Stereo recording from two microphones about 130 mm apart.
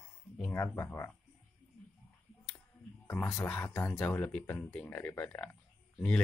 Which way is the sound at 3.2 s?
15° left (ahead or behind).